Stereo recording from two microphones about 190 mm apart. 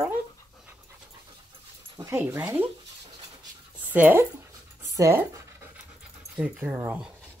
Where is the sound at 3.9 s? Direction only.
10° right (ahead or behind).